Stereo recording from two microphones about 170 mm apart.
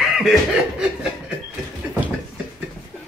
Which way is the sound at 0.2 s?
Centre (ahead or behind).